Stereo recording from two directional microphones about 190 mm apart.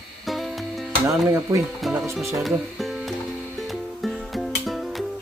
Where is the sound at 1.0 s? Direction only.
15° right (ahead or behind).